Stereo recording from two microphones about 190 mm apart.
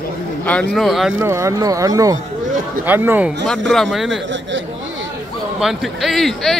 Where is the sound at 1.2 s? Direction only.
15° right (ahead or behind).